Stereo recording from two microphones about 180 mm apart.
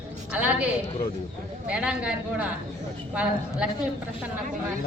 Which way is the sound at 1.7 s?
5° right (ahead or behind).